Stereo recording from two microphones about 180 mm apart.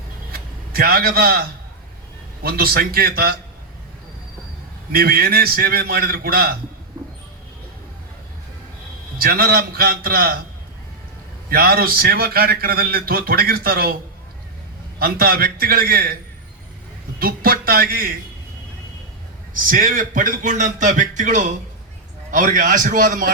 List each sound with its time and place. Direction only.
0.3 s a sound: 55° right (ahead or behind)
2.4 s a man's voice: 55° right (ahead or behind)
4.9 s a man's voice: 55° right (ahead or behind)
9.1 s a man's voice: 55° right (ahead or behind)
11.4 s a man's voice: 55° right (ahead or behind)
14.9 s a man's voice: 55° right (ahead or behind)
17.2 s a man's voice: 55° right (ahead or behind)
19.5 s speech: 50° right (ahead or behind)